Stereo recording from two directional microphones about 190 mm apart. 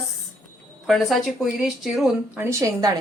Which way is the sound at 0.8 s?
Centre (ahead or behind).